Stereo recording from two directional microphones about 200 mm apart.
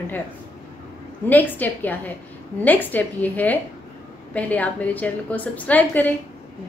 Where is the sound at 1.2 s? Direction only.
10° left (ahead or behind).